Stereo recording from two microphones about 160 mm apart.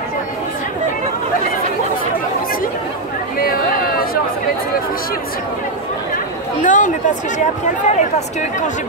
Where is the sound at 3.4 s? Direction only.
65° left (ahead or behind).